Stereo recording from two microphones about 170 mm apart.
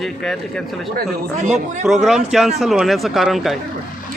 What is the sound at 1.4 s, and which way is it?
Speech, 45° right (ahead or behind).